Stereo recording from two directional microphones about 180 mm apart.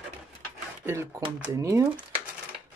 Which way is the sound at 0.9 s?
15° right (ahead or behind).